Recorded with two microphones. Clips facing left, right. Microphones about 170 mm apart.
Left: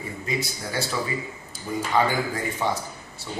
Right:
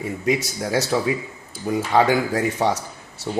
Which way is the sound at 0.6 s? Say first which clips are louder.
Right 7 dB; 80° right.